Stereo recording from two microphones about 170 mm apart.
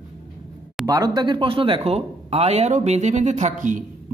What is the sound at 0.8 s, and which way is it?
Speech, 20° right (ahead or behind).